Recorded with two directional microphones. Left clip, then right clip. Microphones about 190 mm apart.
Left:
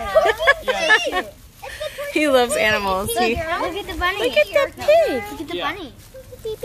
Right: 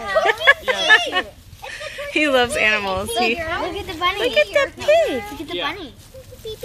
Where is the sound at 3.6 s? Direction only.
5° right (ahead or behind).